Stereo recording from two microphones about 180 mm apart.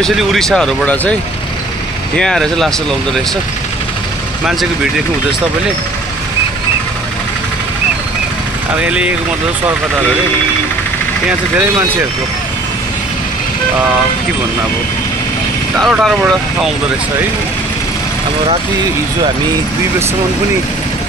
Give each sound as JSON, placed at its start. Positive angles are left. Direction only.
{"t": 0.0, "sound": "speech", "side_deg": 0}
{"t": 2.1, "sound": "speech", "side_deg": 5}
{"t": 8.8, "sound": "speech", "side_deg": -5}
{"t": 15.8, "sound": "speech", "side_deg": 0}